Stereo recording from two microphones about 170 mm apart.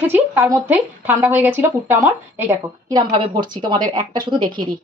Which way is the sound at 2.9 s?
25° right (ahead or behind).